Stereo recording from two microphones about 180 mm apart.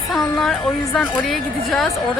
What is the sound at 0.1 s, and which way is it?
Speech, centre (ahead or behind).